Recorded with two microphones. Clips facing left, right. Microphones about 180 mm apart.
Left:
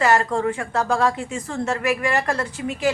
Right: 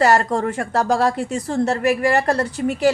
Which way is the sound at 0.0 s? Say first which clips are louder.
Right 2 dB; 40° right (ahead or behind).